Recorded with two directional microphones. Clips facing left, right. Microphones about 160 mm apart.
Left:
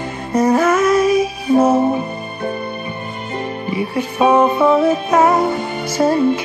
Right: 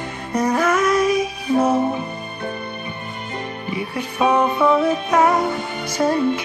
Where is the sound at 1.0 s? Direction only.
5° left (ahead or behind).